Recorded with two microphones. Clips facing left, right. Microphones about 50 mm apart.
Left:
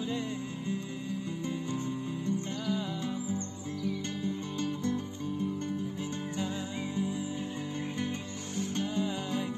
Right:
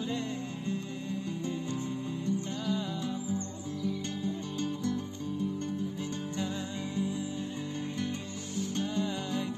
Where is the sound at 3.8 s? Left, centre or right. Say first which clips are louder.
Even; left.